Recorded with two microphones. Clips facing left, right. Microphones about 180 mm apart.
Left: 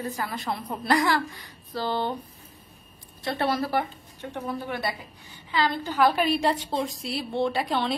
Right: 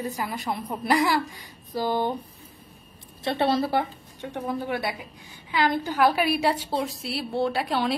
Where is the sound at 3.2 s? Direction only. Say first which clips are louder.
Right 3 dB; 25° right (ahead or behind).